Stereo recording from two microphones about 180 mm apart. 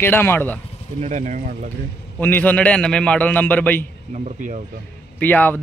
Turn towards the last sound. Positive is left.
turn(degrees=10)  # may be behind; listen again after turning